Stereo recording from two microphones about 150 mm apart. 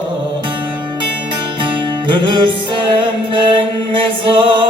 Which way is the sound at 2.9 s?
35° right (ahead or behind).